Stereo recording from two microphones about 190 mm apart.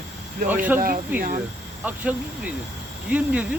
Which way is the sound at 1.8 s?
5° right (ahead or behind).